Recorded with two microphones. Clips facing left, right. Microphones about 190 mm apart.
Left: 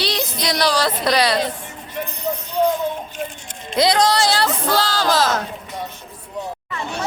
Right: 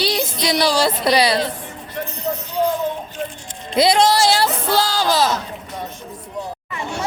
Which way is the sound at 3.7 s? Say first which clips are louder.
Right 2 dB; 25° right (ahead or behind).